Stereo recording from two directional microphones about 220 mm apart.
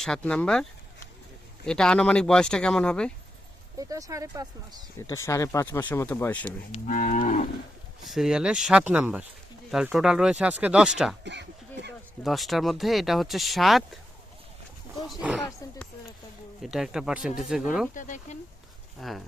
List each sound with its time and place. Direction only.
0.0 s speech: 5° left (ahead or behind)
3.8 s speech: 15° right (ahead or behind)
4.9 s speech: 10° left (ahead or behind)
6.7 s moo: 30° left (ahead or behind)
8.0 s speech: centre (ahead or behind)
11.2 s a sound: 50° right (ahead or behind)
12.2 s speech: centre (ahead or behind)
15.0 s speech: 5° right (ahead or behind)
16.6 s speech: centre (ahead or behind)
17.9 s moo: 35° left (ahead or behind)
18.9 s speech: centre (ahead or behind)